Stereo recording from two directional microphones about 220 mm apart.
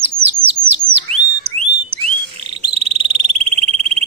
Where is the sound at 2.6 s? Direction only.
25° right (ahead or behind).